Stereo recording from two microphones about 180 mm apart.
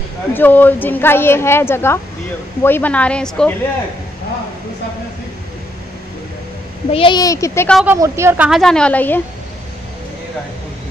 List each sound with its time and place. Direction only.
0.3 s a woman's voice: 10° left (ahead or behind)
6.9 s a child's voice: 30° left (ahead or behind)
7.8 s a woman's voice: 15° right (ahead or behind)
8.5 s a woman's voice: centre (ahead or behind)